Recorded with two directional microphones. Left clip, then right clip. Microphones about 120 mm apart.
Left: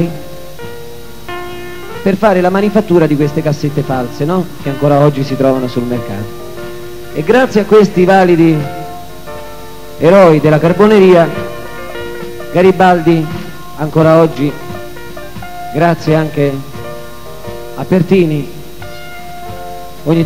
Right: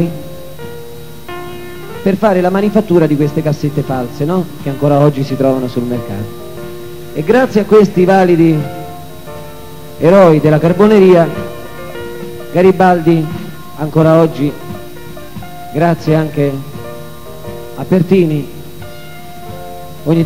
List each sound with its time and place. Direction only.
2.0 s speech: 25° left (ahead or behind)
9.9 s a man's voice: 30° left (ahead or behind)
20.1 s speech: 25° left (ahead or behind)